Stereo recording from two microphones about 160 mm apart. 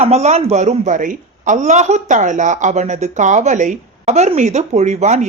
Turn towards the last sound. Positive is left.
turn(degrees=-45)  # may be behind; listen again after turning